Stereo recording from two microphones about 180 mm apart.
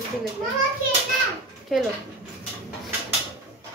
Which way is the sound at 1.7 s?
Centre (ahead or behind).